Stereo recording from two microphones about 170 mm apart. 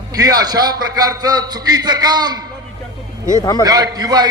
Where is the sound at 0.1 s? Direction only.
20° right (ahead or behind).